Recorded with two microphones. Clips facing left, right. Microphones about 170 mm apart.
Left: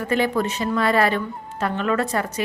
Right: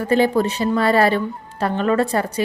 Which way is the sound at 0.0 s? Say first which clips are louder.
Right 5 dB; 35° right (ahead or behind).